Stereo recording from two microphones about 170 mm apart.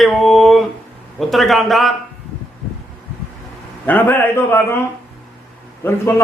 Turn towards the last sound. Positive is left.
turn(degrees=15)  # may be behind; listen again after turning